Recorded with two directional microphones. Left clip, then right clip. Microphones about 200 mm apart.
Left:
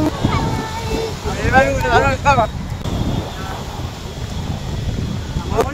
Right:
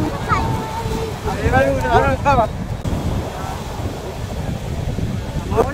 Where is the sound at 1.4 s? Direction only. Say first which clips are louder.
Left 2 dB; 35° right (ahead or behind).